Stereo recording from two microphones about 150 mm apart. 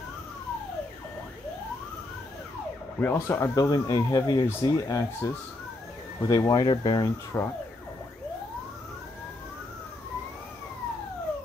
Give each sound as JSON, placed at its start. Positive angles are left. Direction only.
{"t": 3.0, "sound": "speech", "side_deg": 15}
{"t": 7.3, "sound": "speech", "side_deg": 20}